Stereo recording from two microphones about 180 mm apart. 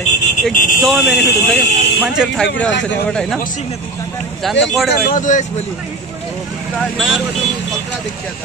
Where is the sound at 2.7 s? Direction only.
80° left.